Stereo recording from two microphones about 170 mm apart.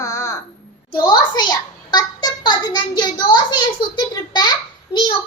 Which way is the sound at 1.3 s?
25° left (ahead or behind).